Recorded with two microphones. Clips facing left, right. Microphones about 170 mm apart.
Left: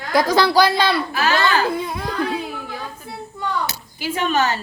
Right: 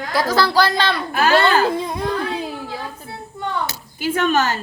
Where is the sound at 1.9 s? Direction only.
30° right (ahead or behind).